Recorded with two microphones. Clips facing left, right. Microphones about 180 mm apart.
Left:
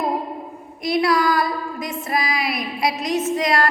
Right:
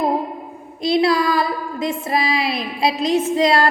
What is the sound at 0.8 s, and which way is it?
A woman's voice, 25° right (ahead or behind).